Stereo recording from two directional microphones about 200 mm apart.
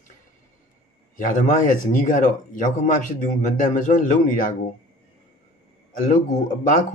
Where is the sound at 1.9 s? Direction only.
40° left (ahead or behind).